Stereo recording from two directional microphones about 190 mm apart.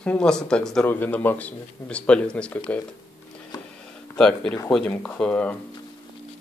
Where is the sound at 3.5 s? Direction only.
20° left (ahead or behind).